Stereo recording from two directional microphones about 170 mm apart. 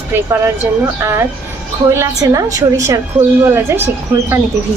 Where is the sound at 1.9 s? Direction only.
20° right (ahead or behind).